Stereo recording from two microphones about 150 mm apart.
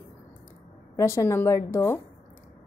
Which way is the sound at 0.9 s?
20° left (ahead or behind).